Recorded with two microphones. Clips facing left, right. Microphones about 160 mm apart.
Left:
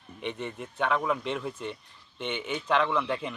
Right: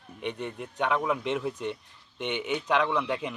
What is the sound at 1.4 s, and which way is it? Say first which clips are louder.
Speech: right 3 dB; centre (ahead or behind).